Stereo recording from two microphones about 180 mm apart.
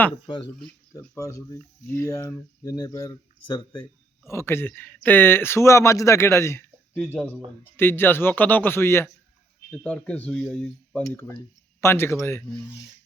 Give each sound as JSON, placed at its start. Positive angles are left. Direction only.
{"t": 0.3, "sound": "speech", "side_deg": 25}
{"t": 0.9, "sound": "speech", "side_deg": 15}